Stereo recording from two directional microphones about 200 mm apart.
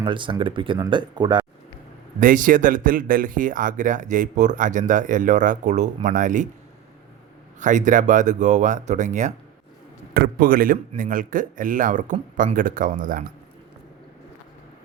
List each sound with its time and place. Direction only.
0.0 s speech: 25° right (ahead or behind)
2.2 s speech: 40° right (ahead or behind)
7.6 s speech: 40° right (ahead or behind)